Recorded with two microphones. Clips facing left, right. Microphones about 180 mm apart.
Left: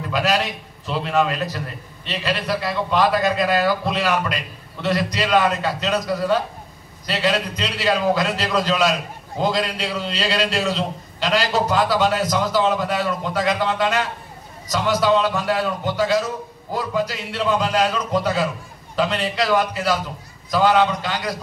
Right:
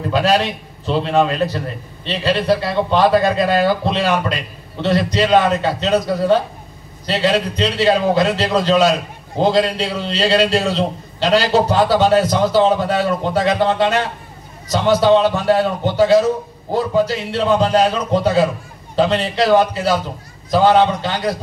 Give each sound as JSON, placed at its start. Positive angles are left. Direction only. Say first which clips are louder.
{"t": 0.1, "sound": "a man's voice", "louder": "right 5 dB", "side_deg": -30}